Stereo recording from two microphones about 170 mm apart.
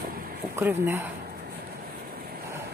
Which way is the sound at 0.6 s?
15° right (ahead or behind).